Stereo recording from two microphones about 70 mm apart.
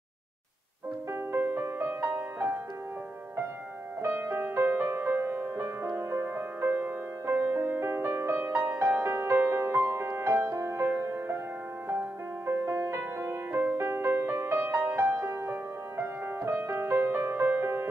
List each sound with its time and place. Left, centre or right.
1.3 s music: right
4.0 s music: right
13.5 s music: right
13.8 s music: right
15.1 s music: right